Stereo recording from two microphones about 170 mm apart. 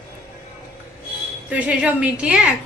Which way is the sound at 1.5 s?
10° right (ahead or behind).